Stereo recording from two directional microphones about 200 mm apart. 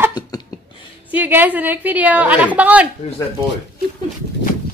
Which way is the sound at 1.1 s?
10° right (ahead or behind).